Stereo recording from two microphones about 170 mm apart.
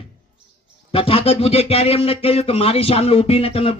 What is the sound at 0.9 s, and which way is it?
Speech, 35° left (ahead or behind).